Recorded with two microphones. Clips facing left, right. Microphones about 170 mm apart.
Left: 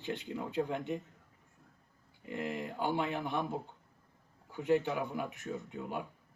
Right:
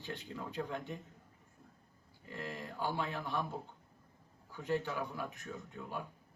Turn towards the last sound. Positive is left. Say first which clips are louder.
# left 4 dB
turn(degrees=20)  # may be behind; listen again after turning